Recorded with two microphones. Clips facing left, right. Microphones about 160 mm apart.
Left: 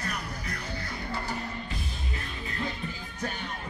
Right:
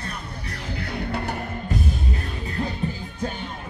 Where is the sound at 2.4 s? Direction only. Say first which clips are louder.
Right 7 dB; 35° right (ahead or behind).